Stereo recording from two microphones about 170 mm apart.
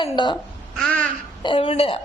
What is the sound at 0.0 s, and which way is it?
Speech, 25° left (ahead or behind).